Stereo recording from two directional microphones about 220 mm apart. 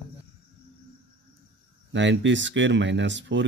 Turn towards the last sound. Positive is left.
turn(degrees=-55)  # may be behind; listen again after turning